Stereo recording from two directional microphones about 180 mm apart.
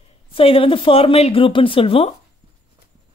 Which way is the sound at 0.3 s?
30° left (ahead or behind).